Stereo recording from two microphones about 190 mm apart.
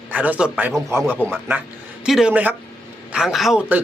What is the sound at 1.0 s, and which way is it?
A man's voice, 5° left (ahead or behind).